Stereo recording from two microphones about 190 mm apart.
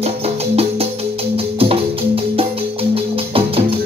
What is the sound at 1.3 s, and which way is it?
Music, 30° right (ahead or behind).